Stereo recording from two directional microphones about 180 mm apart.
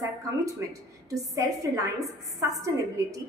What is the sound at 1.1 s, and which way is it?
A woman's voice, 20° right (ahead or behind).